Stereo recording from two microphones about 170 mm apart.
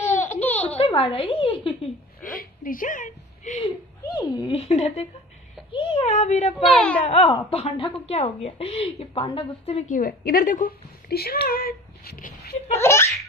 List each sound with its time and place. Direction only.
0.3 s babbling: 10° left (ahead or behind)
0.7 s a sound: 30° left (ahead or behind)
2.2 s a sound: 55° left (ahead or behind)
4.1 s speech: 25° left (ahead or behind)
5.7 s a sound: 30° left (ahead or behind)
6.6 s a child's voice: 5° left (ahead or behind)
7.1 s a woman's voice: 35° left (ahead or behind)
9.9 s a woman's voice: 60° left (ahead or behind)
12.7 s laughter: 15° left (ahead or behind)